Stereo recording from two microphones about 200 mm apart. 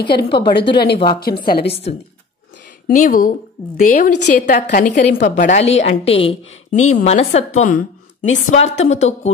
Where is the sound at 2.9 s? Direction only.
45° left (ahead or behind).